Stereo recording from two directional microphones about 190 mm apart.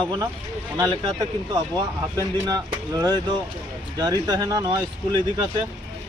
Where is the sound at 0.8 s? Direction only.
20° right (ahead or behind).